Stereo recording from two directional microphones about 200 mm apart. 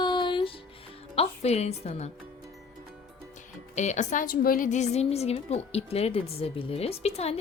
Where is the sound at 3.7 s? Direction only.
35° left (ahead or behind).